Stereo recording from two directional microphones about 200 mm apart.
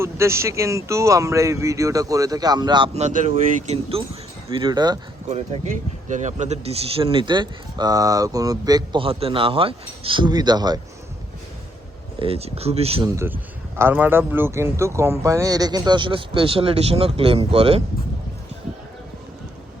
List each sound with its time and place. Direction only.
0.0 s speech: 15° right (ahead or behind)
5.3 s speech: 35° right (ahead or behind); by 10.8 s 20° right (ahead or behind)
12.2 s speech: 30° right (ahead or behind)
13.1 s speech: 10° right (ahead or behind); by 17.8 s 30° right (ahead or behind)